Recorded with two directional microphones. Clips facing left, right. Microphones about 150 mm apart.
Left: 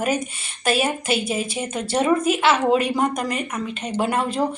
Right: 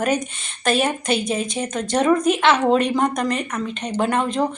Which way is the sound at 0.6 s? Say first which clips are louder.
Right 1 dB; 5° left (ahead or behind).